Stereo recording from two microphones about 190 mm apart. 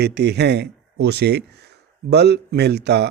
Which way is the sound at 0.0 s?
60° right (ahead or behind).